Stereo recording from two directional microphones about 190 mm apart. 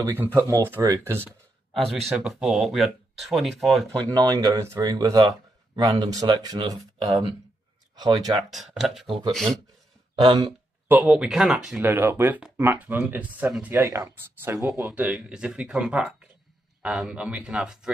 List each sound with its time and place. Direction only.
0.2 s speech: 15° right (ahead or behind)
1.7 s speech: centre (ahead or behind)
4.1 s speech: 20° right (ahead or behind)
8.4 s speech: centre (ahead or behind)
9.0 s speech: 25° right (ahead or behind)
9.3 s speech: centre (ahead or behind)
10.2 s speech: 20° right (ahead or behind)
10.9 s speech: 5° right (ahead or behind)